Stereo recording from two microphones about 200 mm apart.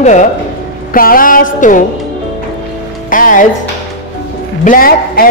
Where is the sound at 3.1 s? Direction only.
40° left (ahead or behind).